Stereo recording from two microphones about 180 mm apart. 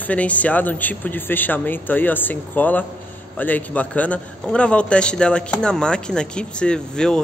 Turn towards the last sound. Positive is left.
turn(degrees=5)  # may be behind; listen again after turning